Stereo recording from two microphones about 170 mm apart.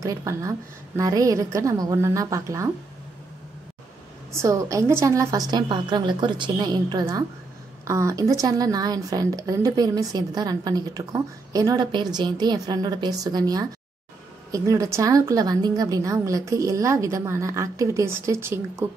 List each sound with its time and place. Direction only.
0.0 s speech: 20° right (ahead or behind)
4.4 s speech: 15° right (ahead or behind)